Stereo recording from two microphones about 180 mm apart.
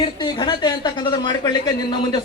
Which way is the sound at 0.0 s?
25° left (ahead or behind).